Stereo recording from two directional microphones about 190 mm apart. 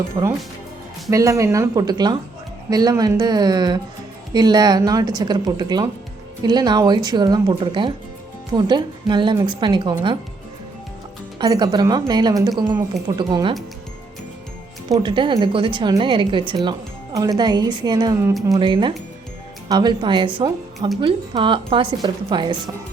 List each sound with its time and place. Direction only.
0.2 s speech: 20° right (ahead or behind)
11.3 s speech: 25° right (ahead or behind)
14.8 s speech: 25° right (ahead or behind)